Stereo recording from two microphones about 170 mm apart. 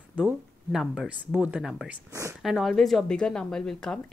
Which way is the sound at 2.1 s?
20° right (ahead or behind).